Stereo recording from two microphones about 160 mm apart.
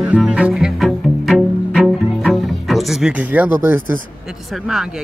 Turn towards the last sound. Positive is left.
turn(degrees=-5)  # may be behind; listen again after turning